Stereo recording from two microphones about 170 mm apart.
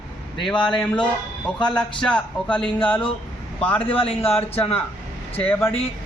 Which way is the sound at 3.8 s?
35° left (ahead or behind).